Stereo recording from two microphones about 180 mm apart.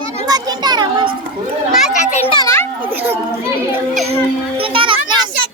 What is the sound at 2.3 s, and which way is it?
Children playing, 20° left (ahead or behind).